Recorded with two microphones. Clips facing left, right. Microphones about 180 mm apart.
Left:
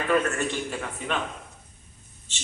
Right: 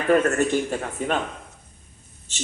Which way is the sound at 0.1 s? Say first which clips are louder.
Right 7 dB; 45° right (ahead or behind).